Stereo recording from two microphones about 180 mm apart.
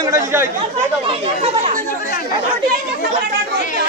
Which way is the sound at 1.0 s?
35° right (ahead or behind).